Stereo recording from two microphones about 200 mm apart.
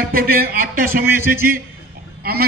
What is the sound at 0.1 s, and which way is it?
A man's voice, 50° right (ahead or behind).